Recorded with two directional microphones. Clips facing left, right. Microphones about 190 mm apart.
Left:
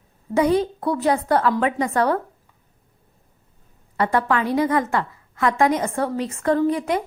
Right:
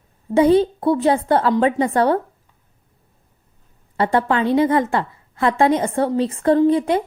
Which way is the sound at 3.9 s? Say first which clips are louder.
Right 2 dB; 30° right (ahead or behind).